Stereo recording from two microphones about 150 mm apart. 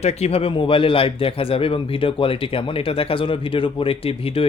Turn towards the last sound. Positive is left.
turn(degrees=40)  # may be behind; listen again after turning